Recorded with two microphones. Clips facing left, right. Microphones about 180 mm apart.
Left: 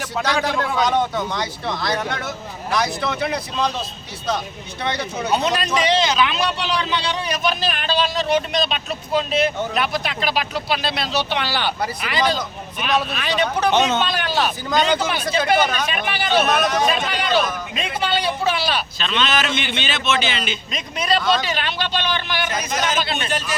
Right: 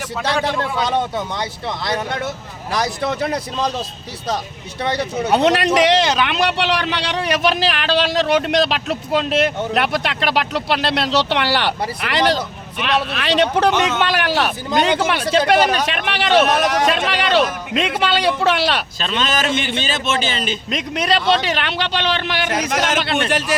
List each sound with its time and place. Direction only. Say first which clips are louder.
0.8 s speech: left 3 dB; 30° right (ahead or behind)
2.7 s speech: right 2 dB; 40° right (ahead or behind)
4.8 s a man's voice: right 4 dB; 35° right (ahead or behind)
5.3 s a man's voice: right 6 dB; 75° right (ahead or behind)
18.9 s a man's voice: right 1 dB; 45° right (ahead or behind)
20.7 s a man's voice: right 3 dB; 80° right